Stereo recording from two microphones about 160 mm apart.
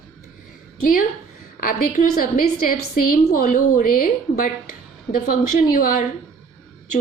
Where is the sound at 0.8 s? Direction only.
65° left (ahead or behind).